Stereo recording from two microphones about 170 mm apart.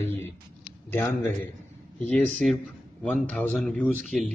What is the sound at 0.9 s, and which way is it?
A man's voice, 15° left (ahead or behind).